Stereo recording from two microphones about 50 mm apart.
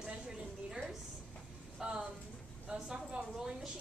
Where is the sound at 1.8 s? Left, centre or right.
Centre.